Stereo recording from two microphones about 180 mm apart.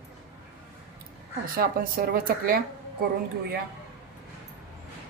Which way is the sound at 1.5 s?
55° right (ahead or behind).